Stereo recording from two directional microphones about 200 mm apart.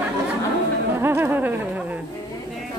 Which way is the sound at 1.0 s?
10° right (ahead or behind).